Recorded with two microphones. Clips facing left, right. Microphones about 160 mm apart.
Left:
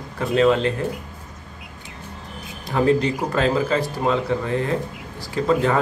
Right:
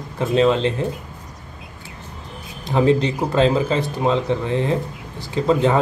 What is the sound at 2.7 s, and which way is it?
Speech, 25° right (ahead or behind).